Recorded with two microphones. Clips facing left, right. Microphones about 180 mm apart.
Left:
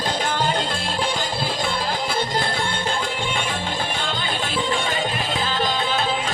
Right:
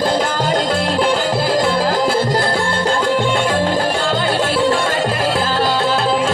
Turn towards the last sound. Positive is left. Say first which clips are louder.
# right 7 dB
turn(degrees=-90)